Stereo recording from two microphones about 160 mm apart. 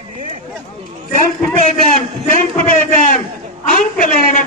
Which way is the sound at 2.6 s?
55° left (ahead or behind).